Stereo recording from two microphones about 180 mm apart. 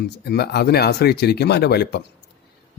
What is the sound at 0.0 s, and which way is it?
A man's voice, 65° left (ahead or behind).